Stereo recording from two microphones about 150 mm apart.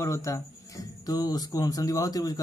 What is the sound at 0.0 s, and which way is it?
Speech, 20° left (ahead or behind).